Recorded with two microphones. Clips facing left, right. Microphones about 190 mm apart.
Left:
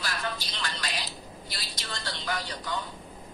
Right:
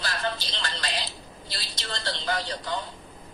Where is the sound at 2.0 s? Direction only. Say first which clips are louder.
Right 4 dB; 30° right (ahead or behind).